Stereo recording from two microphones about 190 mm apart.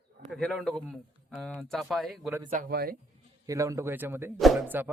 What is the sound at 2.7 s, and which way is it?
Speech, 55° right (ahead or behind).